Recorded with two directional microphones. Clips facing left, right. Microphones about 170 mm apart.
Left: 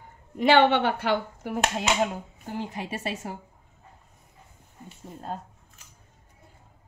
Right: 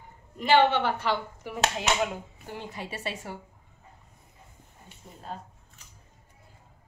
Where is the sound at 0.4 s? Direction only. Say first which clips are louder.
Left 3 dB; 70° left (ahead or behind); by 3.3 s 45° left (ahead or behind).